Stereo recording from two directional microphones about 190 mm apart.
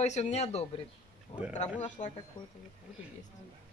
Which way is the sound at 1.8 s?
40° left (ahead or behind).